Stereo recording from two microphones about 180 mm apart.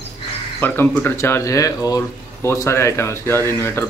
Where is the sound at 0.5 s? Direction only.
10° left (ahead or behind).